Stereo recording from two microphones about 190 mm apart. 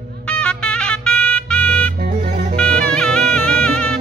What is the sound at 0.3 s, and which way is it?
Music, 5° left (ahead or behind).